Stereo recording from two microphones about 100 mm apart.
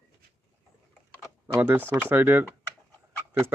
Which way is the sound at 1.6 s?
20° right (ahead or behind).